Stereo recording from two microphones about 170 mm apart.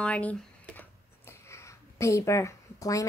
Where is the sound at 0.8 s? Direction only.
15° left (ahead or behind).